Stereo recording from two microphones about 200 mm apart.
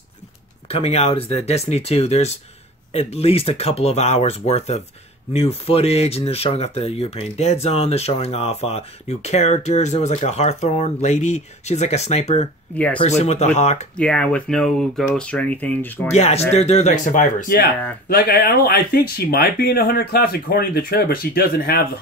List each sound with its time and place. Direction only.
0.7 s speech: 30° left (ahead or behind)
12.7 s speech: 5° left (ahead or behind)
13.2 s speech: 35° left (ahead or behind)
13.9 s speech: 5° left (ahead or behind)
16.1 s speech: 35° left (ahead or behind); by 21.8 s 50° left (ahead or behind)